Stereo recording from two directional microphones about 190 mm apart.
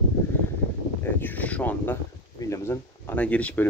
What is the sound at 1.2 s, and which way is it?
Speech, 10° left (ahead or behind).